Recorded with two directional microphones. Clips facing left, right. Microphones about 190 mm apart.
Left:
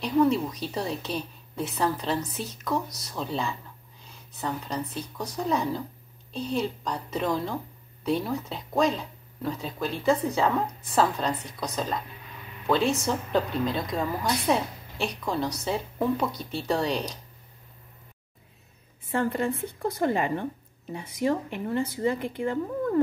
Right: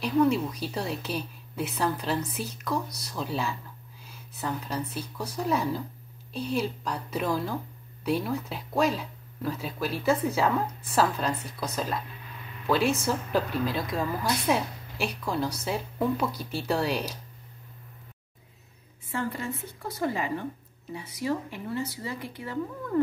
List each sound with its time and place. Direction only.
0.0 s speech: centre (ahead or behind)
19.0 s a woman's voice: 50° left (ahead or behind)